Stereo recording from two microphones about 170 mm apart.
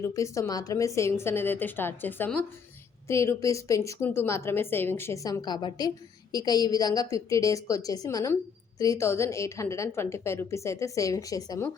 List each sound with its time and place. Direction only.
0.0 s a woman's voice: 20° left (ahead or behind)